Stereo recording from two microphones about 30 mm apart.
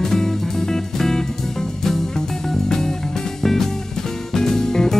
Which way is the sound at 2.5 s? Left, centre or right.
Centre.